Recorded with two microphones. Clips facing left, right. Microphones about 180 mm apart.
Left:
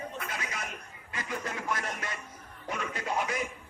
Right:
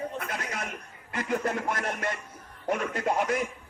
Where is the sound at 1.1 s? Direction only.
55° right (ahead or behind).